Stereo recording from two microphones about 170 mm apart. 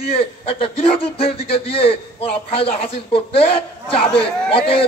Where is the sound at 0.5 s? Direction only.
35° left (ahead or behind).